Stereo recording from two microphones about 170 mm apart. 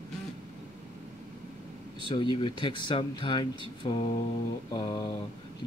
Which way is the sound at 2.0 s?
30° left (ahead or behind).